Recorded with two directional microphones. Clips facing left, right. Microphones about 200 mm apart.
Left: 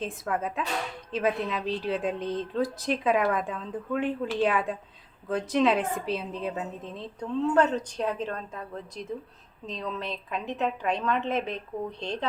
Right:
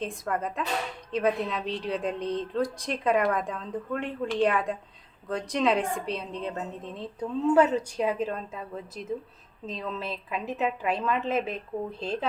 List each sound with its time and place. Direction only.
0.0 s a woman's voice: centre (ahead or behind)